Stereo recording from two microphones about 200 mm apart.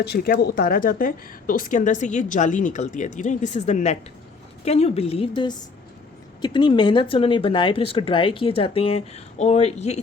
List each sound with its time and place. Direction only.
0.0 s a woman's voice: 55° left (ahead or behind); by 10.0 s 35° left (ahead or behind)